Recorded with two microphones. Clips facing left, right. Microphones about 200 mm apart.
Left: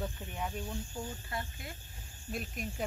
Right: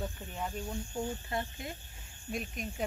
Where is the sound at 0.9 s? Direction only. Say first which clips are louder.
Right 5 dB; 25° right (ahead or behind).